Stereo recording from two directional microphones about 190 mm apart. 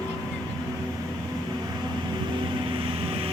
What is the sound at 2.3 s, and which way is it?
Vehicle, 25° right (ahead or behind).